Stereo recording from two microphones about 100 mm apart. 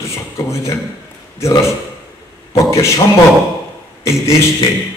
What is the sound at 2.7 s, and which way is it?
Speech, 35° left (ahead or behind).